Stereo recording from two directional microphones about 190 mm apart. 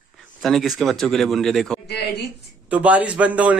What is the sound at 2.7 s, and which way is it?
Speech, 10° right (ahead or behind).